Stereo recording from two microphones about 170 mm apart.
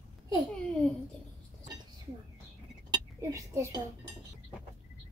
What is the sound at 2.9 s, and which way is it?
Speech, 15° right (ahead or behind).